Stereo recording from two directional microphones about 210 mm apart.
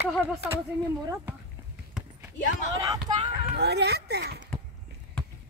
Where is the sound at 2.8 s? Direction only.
15° right (ahead or behind).